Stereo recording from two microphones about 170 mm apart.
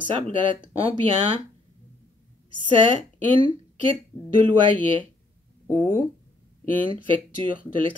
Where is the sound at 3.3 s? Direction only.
30° right (ahead or behind).